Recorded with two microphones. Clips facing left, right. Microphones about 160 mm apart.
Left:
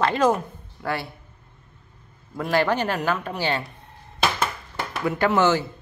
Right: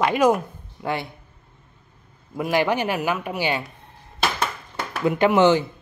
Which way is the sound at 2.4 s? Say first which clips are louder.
Right 1 dB; 15° right (ahead or behind).